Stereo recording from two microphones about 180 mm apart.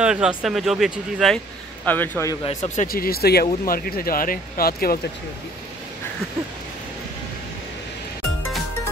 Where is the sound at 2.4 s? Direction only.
40° left (ahead or behind).